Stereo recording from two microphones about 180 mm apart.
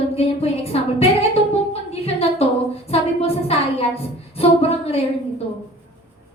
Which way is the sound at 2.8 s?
35° left (ahead or behind).